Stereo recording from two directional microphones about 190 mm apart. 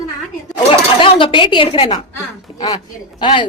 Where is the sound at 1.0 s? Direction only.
25° left (ahead or behind).